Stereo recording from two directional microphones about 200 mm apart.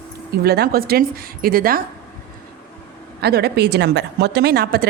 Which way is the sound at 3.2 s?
55° right (ahead or behind).